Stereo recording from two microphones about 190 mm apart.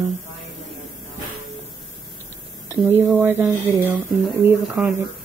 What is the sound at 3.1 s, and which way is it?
Speech, 10° right (ahead or behind).